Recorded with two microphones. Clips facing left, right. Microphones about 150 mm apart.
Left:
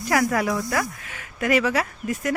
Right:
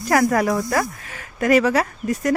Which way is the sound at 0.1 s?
45° right (ahead or behind).